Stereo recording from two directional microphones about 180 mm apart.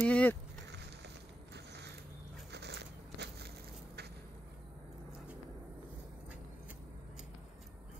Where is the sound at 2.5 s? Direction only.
70° right (ahead or behind).